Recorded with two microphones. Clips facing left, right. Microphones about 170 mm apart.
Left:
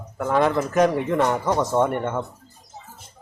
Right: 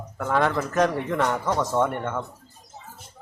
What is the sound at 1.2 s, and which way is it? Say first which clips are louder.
Speech: left 2 dB; 20° left (ahead or behind).